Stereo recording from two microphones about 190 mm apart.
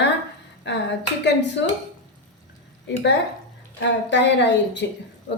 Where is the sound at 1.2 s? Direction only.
65° left (ahead or behind).